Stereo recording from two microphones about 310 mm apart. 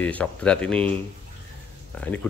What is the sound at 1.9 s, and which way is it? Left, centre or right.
Speech, centre.